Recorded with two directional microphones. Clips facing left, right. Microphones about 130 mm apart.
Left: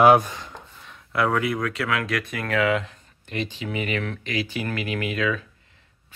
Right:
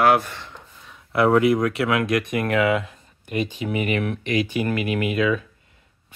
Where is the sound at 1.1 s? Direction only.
25° right (ahead or behind).